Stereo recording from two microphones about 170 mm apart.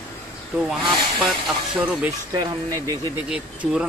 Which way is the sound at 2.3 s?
20° right (ahead or behind).